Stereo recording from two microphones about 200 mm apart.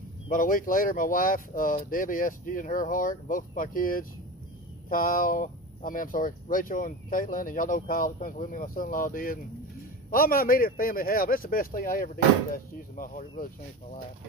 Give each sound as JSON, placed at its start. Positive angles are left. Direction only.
{"t": 0.3, "sound": "speech", "side_deg": 45}